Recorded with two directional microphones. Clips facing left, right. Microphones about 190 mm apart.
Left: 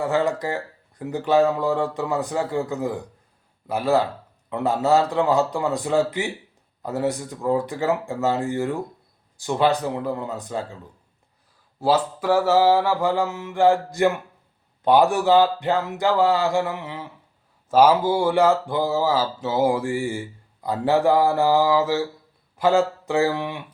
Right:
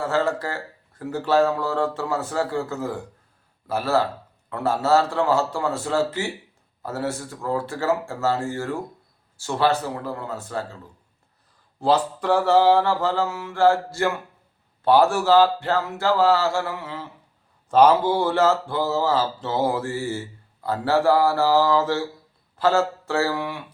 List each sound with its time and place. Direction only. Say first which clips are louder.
0.0 s speech: left 1 dB; 15° left (ahead or behind)
11.8 s speech: even; 5° left (ahead or behind)